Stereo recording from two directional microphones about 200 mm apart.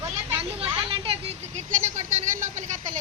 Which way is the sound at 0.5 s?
25° right (ahead or behind).